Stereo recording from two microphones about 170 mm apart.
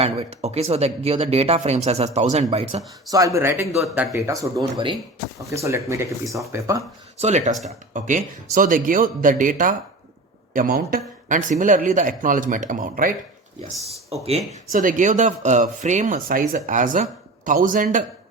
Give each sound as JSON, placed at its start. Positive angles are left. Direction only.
{"t": 0.0, "sound": "speech", "side_deg": -35}
{"t": 3.1, "sound": "speech", "side_deg": -20}
{"t": 7.2, "sound": "speech", "side_deg": -40}
{"t": 13.8, "sound": "speech", "side_deg": -35}
{"t": 14.7, "sound": "speech", "side_deg": -50}